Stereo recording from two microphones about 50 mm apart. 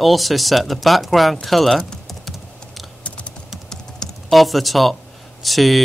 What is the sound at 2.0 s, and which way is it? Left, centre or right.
Typing, centre.